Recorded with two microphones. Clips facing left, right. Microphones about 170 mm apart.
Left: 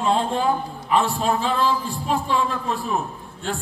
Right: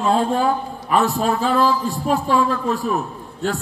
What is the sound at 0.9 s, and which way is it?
Speech, 45° right (ahead or behind).